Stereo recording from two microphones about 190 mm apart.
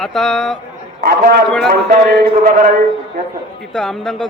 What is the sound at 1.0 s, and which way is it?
A man's voice, 50° right (ahead or behind).